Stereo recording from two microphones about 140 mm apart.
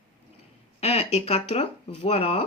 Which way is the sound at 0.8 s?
50° left (ahead or behind).